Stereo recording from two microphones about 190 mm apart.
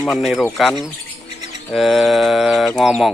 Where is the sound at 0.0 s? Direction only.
Centre (ahead or behind).